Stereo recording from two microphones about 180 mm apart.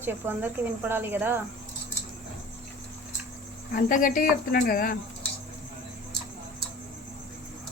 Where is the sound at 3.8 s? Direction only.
50° left (ahead or behind).